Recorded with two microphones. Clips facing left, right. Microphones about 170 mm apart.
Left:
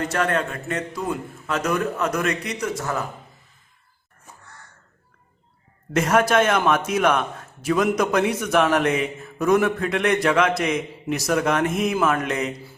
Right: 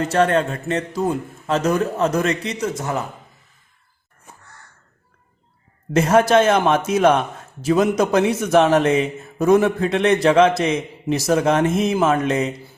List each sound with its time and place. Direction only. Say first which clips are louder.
0.1 s a man's voice: right 6 dB; 30° right (ahead or behind)
5.9 s a man's voice: right 4 dB; 30° right (ahead or behind)